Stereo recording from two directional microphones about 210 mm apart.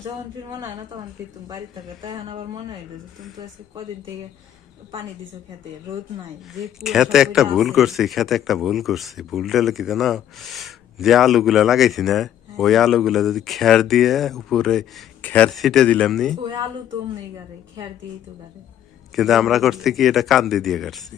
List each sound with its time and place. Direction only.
1.5 s speech: 15° right (ahead or behind)
6.5 s a man's voice: centre (ahead or behind)
19.1 s a man's voice: centre (ahead or behind)